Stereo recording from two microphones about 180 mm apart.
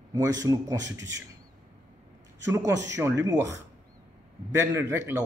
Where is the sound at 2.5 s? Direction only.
15° right (ahead or behind).